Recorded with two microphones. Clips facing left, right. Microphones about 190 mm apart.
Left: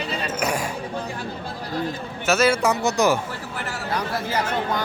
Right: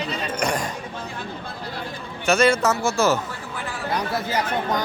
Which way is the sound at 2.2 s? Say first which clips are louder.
Right 1 dB; 5° left (ahead or behind).